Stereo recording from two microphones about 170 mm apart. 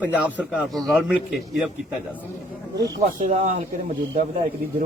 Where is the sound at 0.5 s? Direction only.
Centre (ahead or behind).